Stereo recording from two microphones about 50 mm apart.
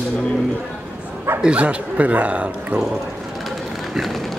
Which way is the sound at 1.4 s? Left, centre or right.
Right.